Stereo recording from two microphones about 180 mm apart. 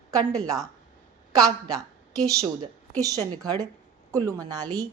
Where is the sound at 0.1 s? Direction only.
20° right (ahead or behind).